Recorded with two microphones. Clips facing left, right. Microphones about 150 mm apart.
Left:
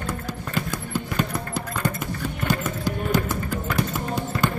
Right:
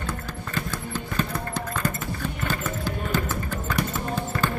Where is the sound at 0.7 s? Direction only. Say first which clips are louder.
Left 1 dB; 10° left (ahead or behind).